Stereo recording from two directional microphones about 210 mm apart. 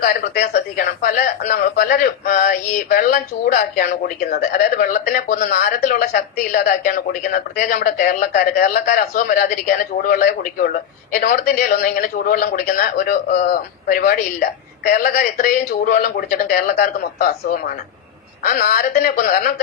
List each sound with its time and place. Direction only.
0.0 s a man's voice: 45° left (ahead or behind)